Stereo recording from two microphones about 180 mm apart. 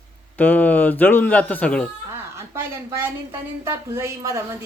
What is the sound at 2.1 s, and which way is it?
A woman's voice, 15° right (ahead or behind).